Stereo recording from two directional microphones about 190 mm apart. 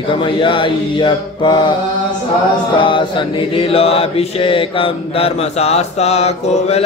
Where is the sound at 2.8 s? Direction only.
25° left (ahead or behind).